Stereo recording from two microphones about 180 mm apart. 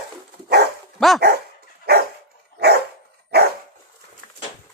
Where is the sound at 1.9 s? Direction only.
60° right (ahead or behind).